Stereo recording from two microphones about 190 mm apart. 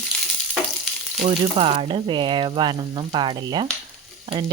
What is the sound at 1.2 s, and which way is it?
Speech, 30° right (ahead or behind).